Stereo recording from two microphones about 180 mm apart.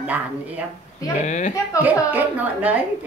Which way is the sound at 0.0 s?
10° right (ahead or behind).